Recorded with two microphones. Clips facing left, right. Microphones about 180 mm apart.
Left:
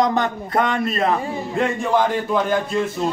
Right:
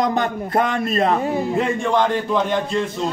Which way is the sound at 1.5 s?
5° left (ahead or behind).